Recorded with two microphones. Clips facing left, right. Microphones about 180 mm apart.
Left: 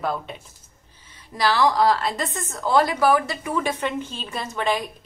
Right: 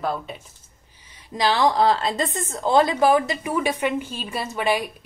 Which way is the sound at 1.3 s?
20° right (ahead or behind).